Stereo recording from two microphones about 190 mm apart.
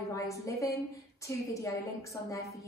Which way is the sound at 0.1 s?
15° left (ahead or behind).